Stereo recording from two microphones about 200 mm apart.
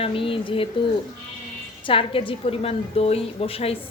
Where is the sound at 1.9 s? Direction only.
25° left (ahead or behind).